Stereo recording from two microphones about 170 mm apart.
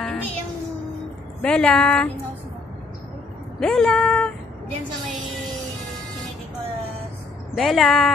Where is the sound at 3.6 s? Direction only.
5° left (ahead or behind).